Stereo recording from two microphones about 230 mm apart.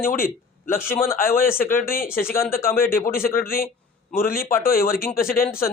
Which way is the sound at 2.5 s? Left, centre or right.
Left.